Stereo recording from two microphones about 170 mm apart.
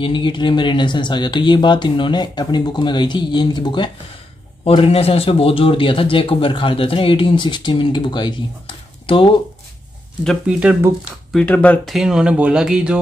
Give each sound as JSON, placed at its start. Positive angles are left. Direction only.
{"t": 0.0, "sound": "a man's voice", "side_deg": 30}
{"t": 10.2, "sound": "speech", "side_deg": -5}
{"t": 11.3, "sound": "speech", "side_deg": 10}